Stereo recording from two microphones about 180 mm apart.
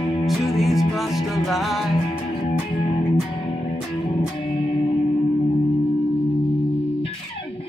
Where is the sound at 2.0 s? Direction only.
30° left (ahead or behind).